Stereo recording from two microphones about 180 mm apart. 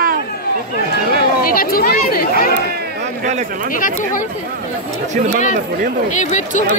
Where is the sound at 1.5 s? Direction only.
55° left (ahead or behind).